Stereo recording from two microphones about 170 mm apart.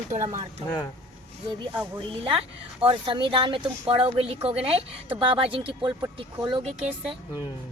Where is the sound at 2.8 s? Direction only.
30° right (ahead or behind).